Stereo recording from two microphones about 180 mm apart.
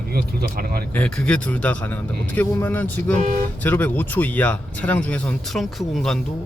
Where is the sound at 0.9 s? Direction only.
5° left (ahead or behind).